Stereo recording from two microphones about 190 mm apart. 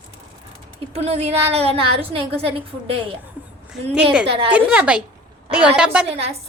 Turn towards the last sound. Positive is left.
turn(degrees=-35)  # may be behind; listen again after turning